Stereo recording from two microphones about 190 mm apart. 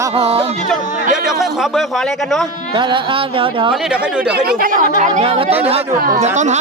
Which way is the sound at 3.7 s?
5° right (ahead or behind).